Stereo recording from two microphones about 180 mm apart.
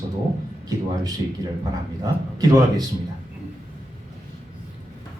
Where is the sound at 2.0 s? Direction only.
20° right (ahead or behind).